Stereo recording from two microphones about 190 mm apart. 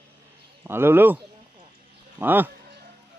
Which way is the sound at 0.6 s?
10° right (ahead or behind).